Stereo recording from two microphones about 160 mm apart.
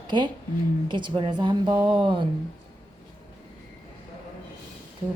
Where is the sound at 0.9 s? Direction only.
30° right (ahead or behind).